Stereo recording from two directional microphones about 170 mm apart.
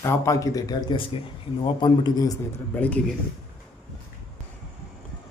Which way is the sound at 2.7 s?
10° left (ahead or behind).